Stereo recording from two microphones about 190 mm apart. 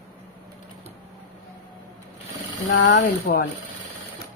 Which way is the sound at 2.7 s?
55° left (ahead or behind).